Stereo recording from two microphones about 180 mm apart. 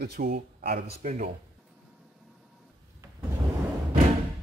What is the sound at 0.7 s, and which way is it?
Speech, 40° right (ahead or behind).